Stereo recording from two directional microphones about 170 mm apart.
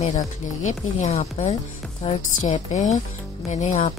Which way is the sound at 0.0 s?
45° left (ahead or behind).